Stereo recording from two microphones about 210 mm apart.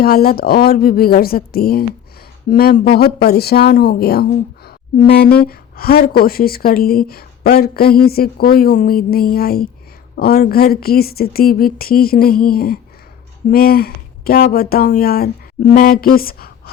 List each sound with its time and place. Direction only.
0.0 s a woman's voice: 45° left (ahead or behind)